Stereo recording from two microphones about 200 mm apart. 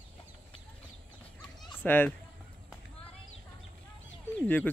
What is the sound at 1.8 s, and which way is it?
Speech, 10° left (ahead or behind).